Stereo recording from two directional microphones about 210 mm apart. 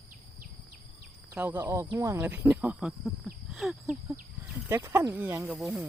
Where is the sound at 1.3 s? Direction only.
10° right (ahead or behind).